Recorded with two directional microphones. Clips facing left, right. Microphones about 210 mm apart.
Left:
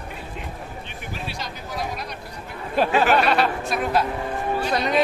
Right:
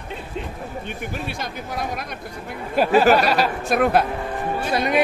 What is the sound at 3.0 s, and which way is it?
Speech, 40° right (ahead or behind).